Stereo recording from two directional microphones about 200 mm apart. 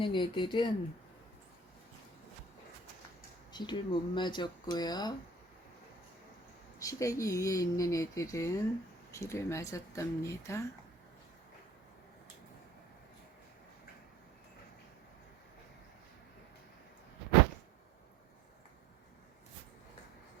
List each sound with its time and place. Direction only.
0.0 s speech: 25° left (ahead or behind)
3.5 s speech: 25° left (ahead or behind)
6.7 s speech: 15° left (ahead or behind)